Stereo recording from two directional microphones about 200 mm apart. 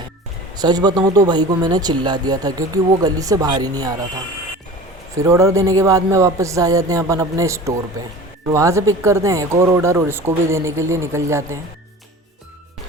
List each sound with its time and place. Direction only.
0.5 s speech: 20° right (ahead or behind)
5.1 s speech: 15° right (ahead or behind)